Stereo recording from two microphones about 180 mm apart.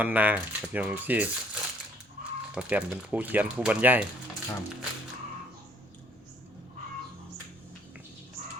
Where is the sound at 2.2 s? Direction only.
50° right (ahead or behind).